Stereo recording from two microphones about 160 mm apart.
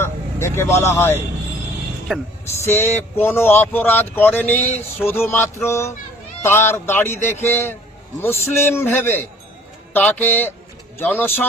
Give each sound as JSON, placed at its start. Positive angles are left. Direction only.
{"t": 0.0, "sound": "speech", "side_deg": 15}
{"t": 2.1, "sound": "speech", "side_deg": 0}
{"t": 2.5, "sound": "speech", "side_deg": 15}